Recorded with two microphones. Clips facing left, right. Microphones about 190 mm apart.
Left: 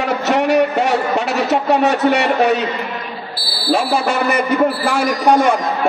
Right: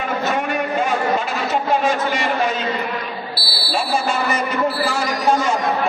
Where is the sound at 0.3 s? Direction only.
75° left (ahead or behind).